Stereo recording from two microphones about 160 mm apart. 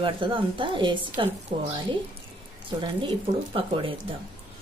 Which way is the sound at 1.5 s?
45° right (ahead or behind).